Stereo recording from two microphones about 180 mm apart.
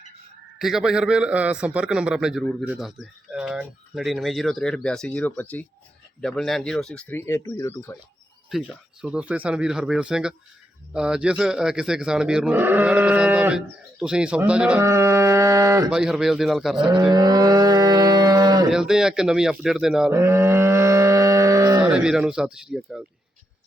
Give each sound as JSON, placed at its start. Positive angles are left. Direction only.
{"t": 0.6, "sound": "a man's voice", "side_deg": 0}
{"t": 8.4, "sound": "a man's voice", "side_deg": 0}
{"t": 14.8, "sound": "a sound", "side_deg": -15}
{"t": 15.9, "sound": "a man's voice", "side_deg": -5}
{"t": 16.9, "sound": "moo", "side_deg": -20}
{"t": 18.7, "sound": "a man's voice", "side_deg": -5}
{"t": 20.1, "sound": "livestock", "side_deg": -15}
{"t": 21.8, "sound": "a man's voice", "side_deg": -5}